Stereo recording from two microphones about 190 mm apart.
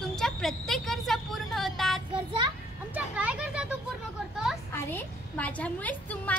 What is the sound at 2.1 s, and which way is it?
Child singing, 25° right (ahead or behind).